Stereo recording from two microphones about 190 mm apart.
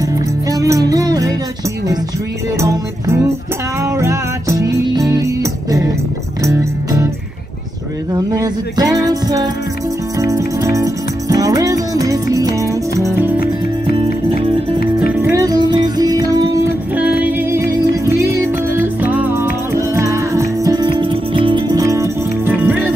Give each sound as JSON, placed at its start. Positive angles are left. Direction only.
{"t": 0.0, "sound": "music", "side_deg": -20}
{"t": 2.6, "sound": "music", "side_deg": -15}
{"t": 8.1, "sound": "music", "side_deg": -20}
{"t": 13.9, "sound": "music", "side_deg": -30}
{"t": 15.2, "sound": "music", "side_deg": -20}
{"t": 16.9, "sound": "music", "side_deg": -10}